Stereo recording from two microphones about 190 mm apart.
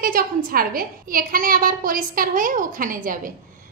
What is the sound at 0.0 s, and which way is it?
A woman's voice, 50° right (ahead or behind).